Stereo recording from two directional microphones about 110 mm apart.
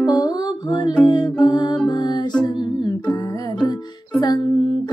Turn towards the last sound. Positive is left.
turn(degrees=40)  # may be behind; listen again after turning